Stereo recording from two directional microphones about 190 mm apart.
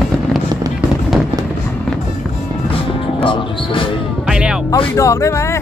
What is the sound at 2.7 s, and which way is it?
Music, 25° left (ahead or behind).